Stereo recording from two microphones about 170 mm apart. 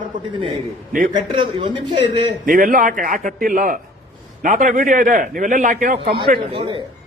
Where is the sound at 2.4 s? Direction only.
55° right (ahead or behind).